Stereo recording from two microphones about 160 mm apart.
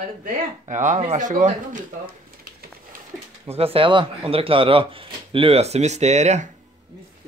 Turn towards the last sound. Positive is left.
turn(degrees=-45)  # may be behind; listen again after turning